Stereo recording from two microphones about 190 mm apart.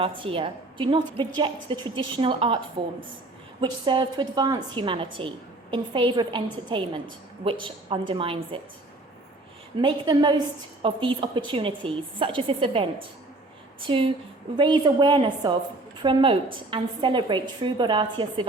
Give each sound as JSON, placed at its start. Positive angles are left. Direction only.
{"t": 0.0, "sound": "a woman's voice", "side_deg": -30}
{"t": 9.8, "sound": "a woman's voice", "side_deg": -20}